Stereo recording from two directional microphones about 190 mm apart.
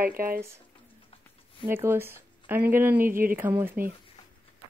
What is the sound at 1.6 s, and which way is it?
Speech, 10° right (ahead or behind).